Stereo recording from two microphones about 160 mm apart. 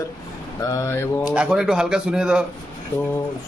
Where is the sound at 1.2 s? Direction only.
5° right (ahead or behind).